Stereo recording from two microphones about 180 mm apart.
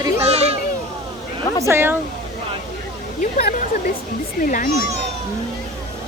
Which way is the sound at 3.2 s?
50° left (ahead or behind).